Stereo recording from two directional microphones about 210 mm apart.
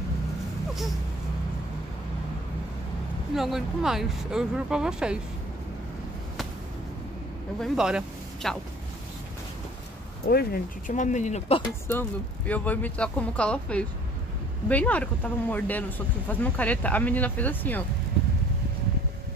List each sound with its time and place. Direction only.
3.3 s speech: centre (ahead or behind)
7.6 s speech: 5° right (ahead or behind)
10.2 s speech: 45° left (ahead or behind); by 11.6 s 30° left (ahead or behind)
11.9 s speech: 10° left (ahead or behind)